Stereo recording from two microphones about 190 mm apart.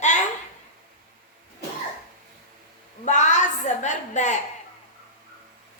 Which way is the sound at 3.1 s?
40° left (ahead or behind).